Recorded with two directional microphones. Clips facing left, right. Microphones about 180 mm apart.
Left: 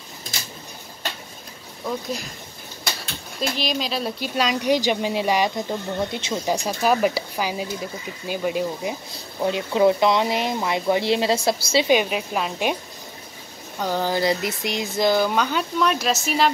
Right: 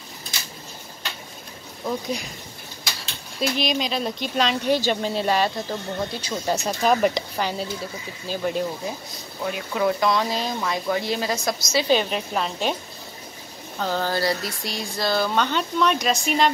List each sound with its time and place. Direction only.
1.9 s speech: centre (ahead or behind)
3.3 s speech: centre (ahead or behind)
9.4 s speech: 25° left (ahead or behind)
11.9 s speech: 10° left (ahead or behind)
13.7 s speech: 15° left (ahead or behind)